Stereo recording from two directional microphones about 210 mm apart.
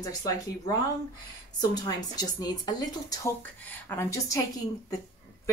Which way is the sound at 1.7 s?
20° left (ahead or behind).